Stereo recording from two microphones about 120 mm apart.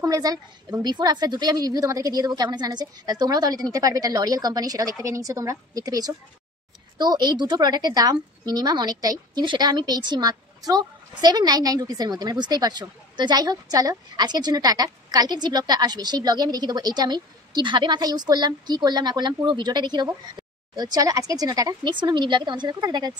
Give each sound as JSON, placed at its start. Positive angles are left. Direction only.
{"t": 0.0, "sound": "a woman's voice", "side_deg": -30}